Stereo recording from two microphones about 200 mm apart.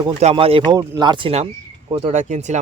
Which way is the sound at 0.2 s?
30° right (ahead or behind).